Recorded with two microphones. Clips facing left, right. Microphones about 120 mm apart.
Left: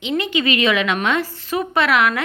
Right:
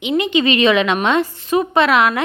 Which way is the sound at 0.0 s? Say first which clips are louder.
Right 4 dB; 15° right (ahead or behind).